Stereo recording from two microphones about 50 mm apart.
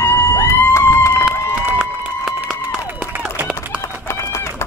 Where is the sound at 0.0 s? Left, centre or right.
Left.